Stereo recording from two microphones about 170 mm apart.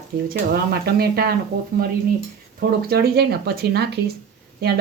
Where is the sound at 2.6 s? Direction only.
70° right (ahead or behind).